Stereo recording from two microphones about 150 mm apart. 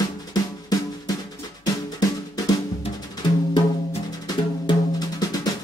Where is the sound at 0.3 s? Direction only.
25° left (ahead or behind).